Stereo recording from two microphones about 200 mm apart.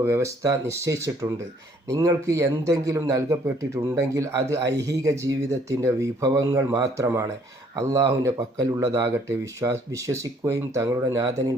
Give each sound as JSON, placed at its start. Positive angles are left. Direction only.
{"t": 0.0, "sound": "speech", "side_deg": -15}